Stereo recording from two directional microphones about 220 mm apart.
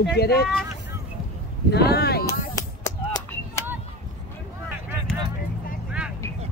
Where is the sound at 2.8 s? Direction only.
15° left (ahead or behind).